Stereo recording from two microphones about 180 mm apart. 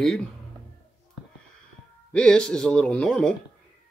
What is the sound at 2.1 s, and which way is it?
Speech, 5° left (ahead or behind).